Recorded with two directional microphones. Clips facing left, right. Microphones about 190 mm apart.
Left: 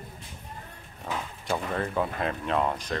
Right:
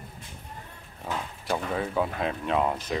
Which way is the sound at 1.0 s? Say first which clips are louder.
Right 1 dB; centre (ahead or behind).